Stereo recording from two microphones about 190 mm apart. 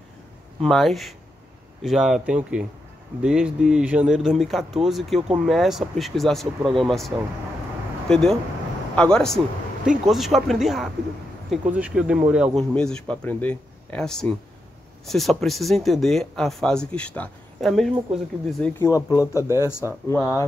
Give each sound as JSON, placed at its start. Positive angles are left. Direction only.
{"t": 0.6, "sound": "speech", "side_deg": 0}
{"t": 18.7, "sound": "speech", "side_deg": 15}